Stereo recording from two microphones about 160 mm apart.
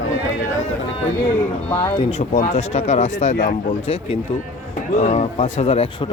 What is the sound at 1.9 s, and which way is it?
Speech, 40° left (ahead or behind).